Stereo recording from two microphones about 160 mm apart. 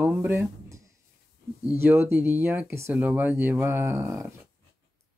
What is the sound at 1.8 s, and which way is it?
Speech, 15° right (ahead or behind).